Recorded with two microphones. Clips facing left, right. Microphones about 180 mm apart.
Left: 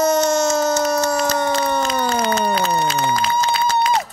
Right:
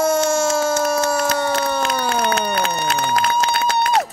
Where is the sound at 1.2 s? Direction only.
65° right (ahead or behind).